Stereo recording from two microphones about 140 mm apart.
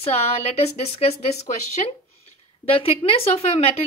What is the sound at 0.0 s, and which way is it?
Speech, 50° left (ahead or behind).